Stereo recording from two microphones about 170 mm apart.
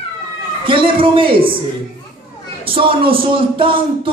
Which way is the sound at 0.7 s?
30° right (ahead or behind).